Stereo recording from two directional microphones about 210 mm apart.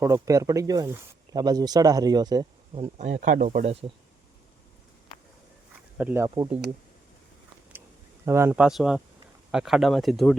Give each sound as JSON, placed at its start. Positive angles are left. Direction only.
{"t": 0.0, "sound": "speech", "side_deg": -15}
{"t": 2.7, "sound": "speech", "side_deg": -30}
{"t": 6.0, "sound": "speech", "side_deg": -10}
{"t": 8.2, "sound": "speech", "side_deg": -10}